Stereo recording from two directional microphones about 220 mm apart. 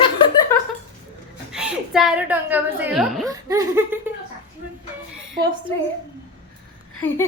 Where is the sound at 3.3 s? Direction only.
15° right (ahead or behind).